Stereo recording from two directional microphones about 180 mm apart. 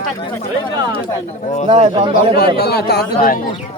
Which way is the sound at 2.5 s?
65° left (ahead or behind).